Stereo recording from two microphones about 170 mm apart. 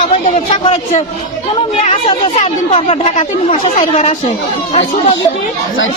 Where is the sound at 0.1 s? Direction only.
35° left (ahead or behind).